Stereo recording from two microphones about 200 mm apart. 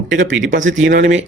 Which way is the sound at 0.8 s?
40° right (ahead or behind).